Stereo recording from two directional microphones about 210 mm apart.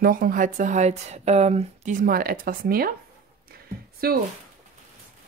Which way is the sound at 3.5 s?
45° right (ahead or behind).